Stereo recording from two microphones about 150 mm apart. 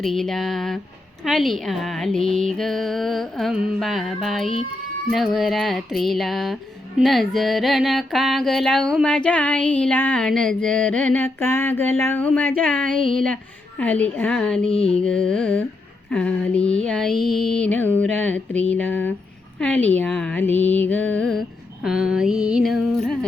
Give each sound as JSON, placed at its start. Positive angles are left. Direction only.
{"t": 0.0, "sound": "speech", "side_deg": 0}
{"t": 7.0, "sound": "music", "side_deg": 0}
{"t": 14.7, "sound": "a sound", "side_deg": 40}
{"t": 15.0, "sound": "speech", "side_deg": 5}
{"t": 16.1, "sound": "music", "side_deg": 5}
{"t": 16.6, "sound": "speech", "side_deg": 5}
{"t": 17.7, "sound": "music", "side_deg": 10}
{"t": 19.5, "sound": "a woman's voice", "side_deg": 10}
{"t": 20.0, "sound": "music", "side_deg": 10}
{"t": 21.8, "sound": "speech", "side_deg": -5}